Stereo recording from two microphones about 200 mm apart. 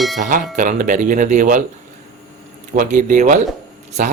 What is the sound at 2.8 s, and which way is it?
Speech, 40° right (ahead or behind).